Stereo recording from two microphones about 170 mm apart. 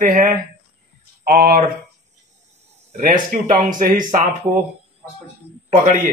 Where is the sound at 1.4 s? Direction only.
65° right (ahead or behind).